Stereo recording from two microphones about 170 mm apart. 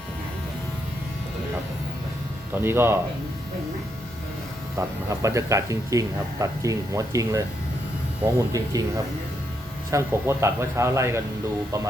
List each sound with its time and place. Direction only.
2.6 s speech: 15° right (ahead or behind)
4.8 s speech: 20° right (ahead or behind)
9.9 s speech: 15° right (ahead or behind)